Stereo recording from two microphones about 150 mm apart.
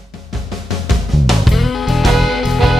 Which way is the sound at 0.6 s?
Centre (ahead or behind).